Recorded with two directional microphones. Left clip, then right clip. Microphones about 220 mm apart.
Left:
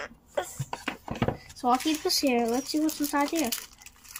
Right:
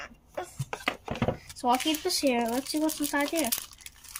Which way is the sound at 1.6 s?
Centre (ahead or behind).